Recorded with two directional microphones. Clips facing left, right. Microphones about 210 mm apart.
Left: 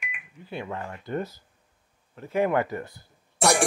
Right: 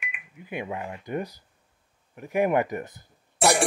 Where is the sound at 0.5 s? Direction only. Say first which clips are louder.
Right 1 dB; 15° right (ahead or behind).